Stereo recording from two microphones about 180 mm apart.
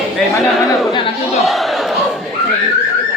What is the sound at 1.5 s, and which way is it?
Battle cry, centre (ahead or behind).